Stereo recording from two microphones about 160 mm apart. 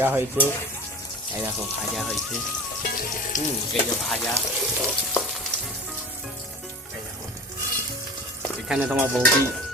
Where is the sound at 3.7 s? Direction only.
5° left (ahead or behind).